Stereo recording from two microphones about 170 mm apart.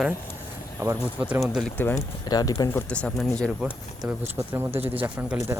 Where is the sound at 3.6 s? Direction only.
10° right (ahead or behind).